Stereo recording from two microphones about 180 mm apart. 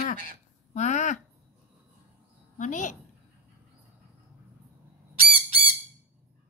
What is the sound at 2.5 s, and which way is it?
Speech, 45° left (ahead or behind).